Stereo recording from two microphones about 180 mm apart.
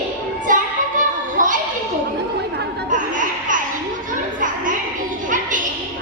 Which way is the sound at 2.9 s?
45° right (ahead or behind).